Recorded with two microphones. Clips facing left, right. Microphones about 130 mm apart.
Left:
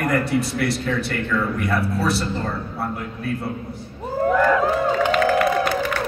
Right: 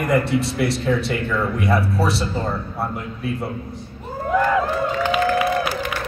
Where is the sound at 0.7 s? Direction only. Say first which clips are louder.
Right 3 dB; centre (ahead or behind).